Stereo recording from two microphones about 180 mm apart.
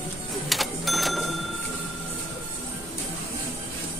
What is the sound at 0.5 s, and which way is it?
Printer, centre (ahead or behind).